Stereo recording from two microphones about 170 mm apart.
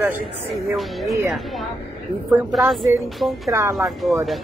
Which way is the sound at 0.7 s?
Centre (ahead or behind).